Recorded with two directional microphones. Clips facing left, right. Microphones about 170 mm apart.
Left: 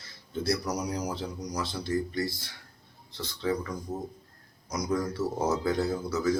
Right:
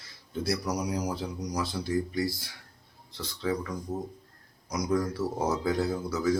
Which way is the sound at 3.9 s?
5° left (ahead or behind).